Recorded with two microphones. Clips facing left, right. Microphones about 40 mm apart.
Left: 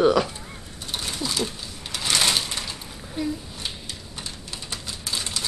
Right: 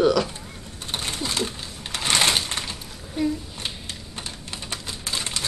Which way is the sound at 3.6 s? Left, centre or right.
Right.